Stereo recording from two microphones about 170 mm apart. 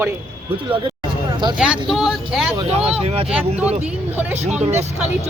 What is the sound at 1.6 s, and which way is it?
Speech, 5° right (ahead or behind).